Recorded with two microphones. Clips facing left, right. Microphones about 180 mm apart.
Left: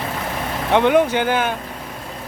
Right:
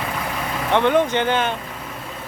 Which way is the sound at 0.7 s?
15° left (ahead or behind).